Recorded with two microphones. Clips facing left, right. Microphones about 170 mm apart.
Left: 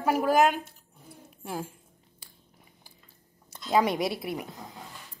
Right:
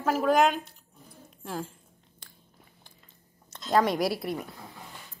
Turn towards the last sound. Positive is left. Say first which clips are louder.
# right 1 dB
turn(degrees=0)  # may be behind; listen again after turning